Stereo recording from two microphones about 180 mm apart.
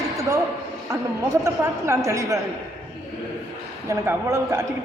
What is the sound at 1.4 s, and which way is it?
Speech, 15° right (ahead or behind).